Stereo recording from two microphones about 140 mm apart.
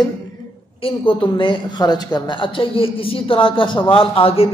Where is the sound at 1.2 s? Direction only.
35° left (ahead or behind).